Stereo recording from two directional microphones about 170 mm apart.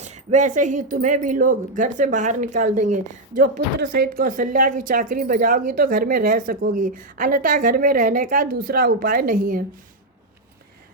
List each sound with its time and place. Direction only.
0.0 s speech: 45° right (ahead or behind)